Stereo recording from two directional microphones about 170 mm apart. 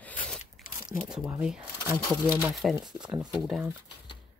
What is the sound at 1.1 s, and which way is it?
Speech, 5° right (ahead or behind).